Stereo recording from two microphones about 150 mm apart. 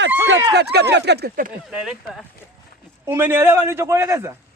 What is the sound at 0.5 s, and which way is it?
Speech, 90° right.